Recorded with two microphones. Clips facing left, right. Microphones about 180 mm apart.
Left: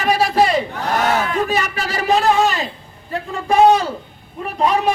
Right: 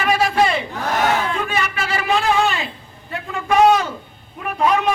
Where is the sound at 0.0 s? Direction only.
35° left (ahead or behind).